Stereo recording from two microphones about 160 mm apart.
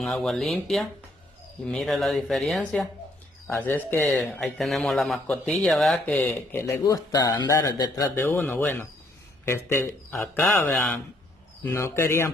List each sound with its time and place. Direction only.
0.0 s speech: centre (ahead or behind)
3.4 s speech: 10° left (ahead or behind)
4.4 s speech: centre (ahead or behind)
6.6 s speech: 20° left (ahead or behind)